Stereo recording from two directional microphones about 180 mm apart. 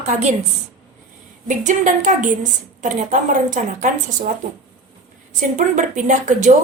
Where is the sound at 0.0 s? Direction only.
40° right (ahead or behind).